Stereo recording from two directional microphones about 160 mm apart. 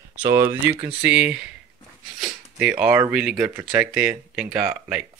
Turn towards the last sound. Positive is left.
turn(degrees=-5)  # may be behind; listen again after turning